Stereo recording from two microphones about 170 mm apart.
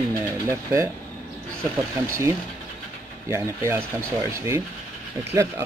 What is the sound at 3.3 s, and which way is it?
Speech, 15° right (ahead or behind).